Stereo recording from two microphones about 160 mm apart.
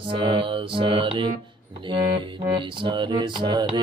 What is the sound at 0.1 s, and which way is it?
Mantra, 30° right (ahead or behind).